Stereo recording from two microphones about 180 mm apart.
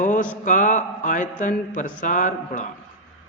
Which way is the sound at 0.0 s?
45° left (ahead or behind).